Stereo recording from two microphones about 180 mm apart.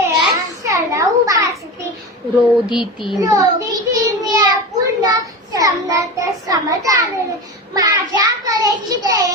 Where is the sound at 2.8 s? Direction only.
25° left (ahead or behind).